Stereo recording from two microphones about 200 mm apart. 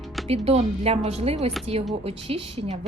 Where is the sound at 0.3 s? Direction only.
30° right (ahead or behind).